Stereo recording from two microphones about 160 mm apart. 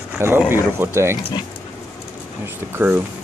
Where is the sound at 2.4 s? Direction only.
15° right (ahead or behind).